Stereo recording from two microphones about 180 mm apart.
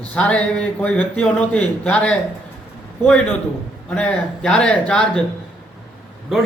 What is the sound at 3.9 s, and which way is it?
Speech, 5° left (ahead or behind).